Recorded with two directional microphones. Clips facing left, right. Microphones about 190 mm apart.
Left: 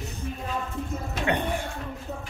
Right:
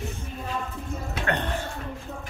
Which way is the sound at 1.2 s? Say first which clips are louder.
Left 2 dB; 10° left (ahead or behind).